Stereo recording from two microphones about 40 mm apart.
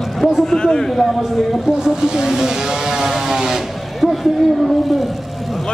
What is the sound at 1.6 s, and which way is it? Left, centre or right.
Vehicle, centre.